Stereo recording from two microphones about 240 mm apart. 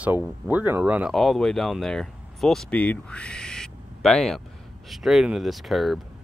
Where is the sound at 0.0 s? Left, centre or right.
Centre.